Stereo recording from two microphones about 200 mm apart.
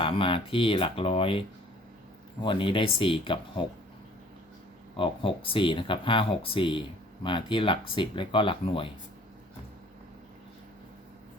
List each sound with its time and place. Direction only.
0.0 s speech: 25° left (ahead or behind)
4.9 s speech: 25° left (ahead or behind)